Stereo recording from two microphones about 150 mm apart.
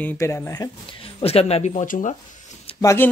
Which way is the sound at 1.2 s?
40° left (ahead or behind).